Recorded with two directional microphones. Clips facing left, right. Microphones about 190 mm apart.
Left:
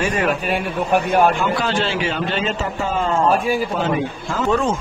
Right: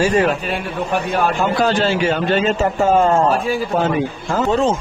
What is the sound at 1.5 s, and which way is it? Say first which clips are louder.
A man's voice: right 4 dB; 40° right (ahead or behind).